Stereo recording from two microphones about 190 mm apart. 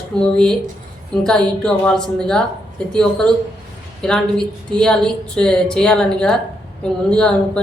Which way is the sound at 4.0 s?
5° left (ahead or behind).